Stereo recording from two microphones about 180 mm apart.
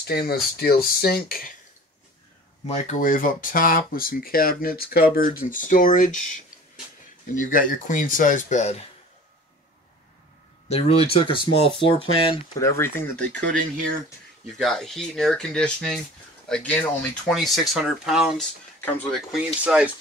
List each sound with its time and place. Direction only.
0.0 s speech: 60° left (ahead or behind)
2.7 s speech: 45° left (ahead or behind)
7.3 s speech: 50° left (ahead or behind)
10.7 s speech: 30° left (ahead or behind)
12.5 s speech: 15° left (ahead or behind)
14.6 s speech: centre (ahead or behind)
18.8 s speech: 10° left (ahead or behind); by 19.9 s 5° right (ahead or behind)